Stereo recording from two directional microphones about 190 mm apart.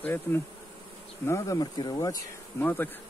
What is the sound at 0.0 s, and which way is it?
Speech, 10° left (ahead or behind).